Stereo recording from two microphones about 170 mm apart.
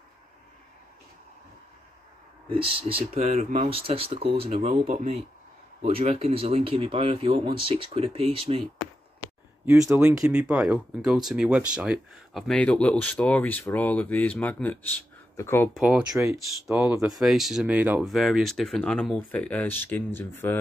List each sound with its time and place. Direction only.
2.5 s speech: 35° right (ahead or behind)
3.6 s speech: 35° right (ahead or behind)
5.9 s speech: 35° right (ahead or behind)
9.8 s speech: 10° right (ahead or behind); by 15.7 s 15° left (ahead or behind)
15.7 s speech: centre (ahead or behind)
16.1 s speech: 15° right (ahead or behind)
17.1 s speech: centre (ahead or behind)